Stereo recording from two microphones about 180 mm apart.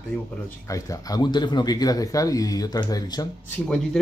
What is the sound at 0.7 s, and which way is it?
Speech, 20° left (ahead or behind).